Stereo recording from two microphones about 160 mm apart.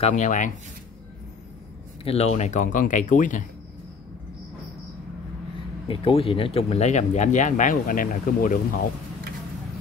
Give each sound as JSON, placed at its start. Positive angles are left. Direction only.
{"t": 0.0, "sound": "speech", "side_deg": 50}
{"t": 2.0, "sound": "speech", "side_deg": 40}
{"t": 5.9, "sound": "speech", "side_deg": 35}